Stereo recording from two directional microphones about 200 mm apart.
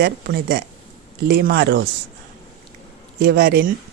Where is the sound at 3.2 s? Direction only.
50° right (ahead or behind).